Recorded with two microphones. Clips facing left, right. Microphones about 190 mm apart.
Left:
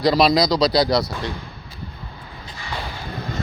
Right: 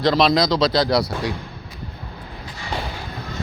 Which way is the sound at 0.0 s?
5° left (ahead or behind).